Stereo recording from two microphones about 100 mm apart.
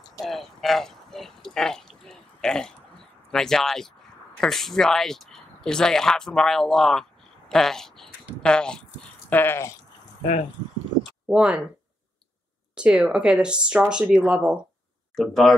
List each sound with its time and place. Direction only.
0.2 s a sound: centre (ahead or behind)
3.3 s speech: 5° left (ahead or behind)
9.3 s speech: 20° left (ahead or behind)
11.2 s speech: 10° right (ahead or behind)
12.7 s speech: 10° right (ahead or behind)
15.1 s speech: centre (ahead or behind)